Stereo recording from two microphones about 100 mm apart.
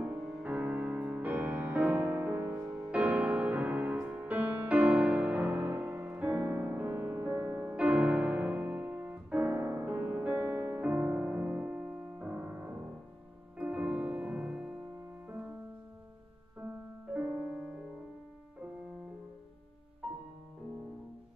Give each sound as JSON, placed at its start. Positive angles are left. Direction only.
{"t": 0.0, "sound": "music", "side_deg": -10}
{"t": 16.6, "sound": "music", "side_deg": -15}
{"t": 20.0, "sound": "music", "side_deg": -10}